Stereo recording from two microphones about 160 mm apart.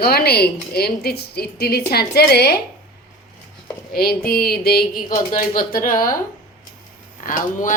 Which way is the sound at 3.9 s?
70° left (ahead or behind).